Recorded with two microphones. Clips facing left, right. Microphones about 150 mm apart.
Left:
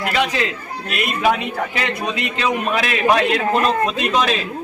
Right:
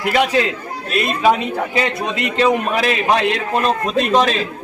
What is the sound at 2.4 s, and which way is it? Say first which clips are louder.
Speech: right 5 dB; 35° right (ahead or behind).